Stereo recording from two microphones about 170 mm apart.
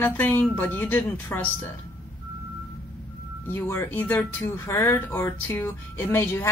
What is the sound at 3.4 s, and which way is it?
Speech, 10° left (ahead or behind).